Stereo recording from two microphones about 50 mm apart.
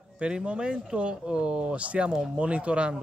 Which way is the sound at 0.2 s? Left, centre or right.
Centre.